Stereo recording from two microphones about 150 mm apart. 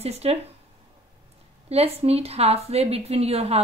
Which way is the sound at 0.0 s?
45° right (ahead or behind).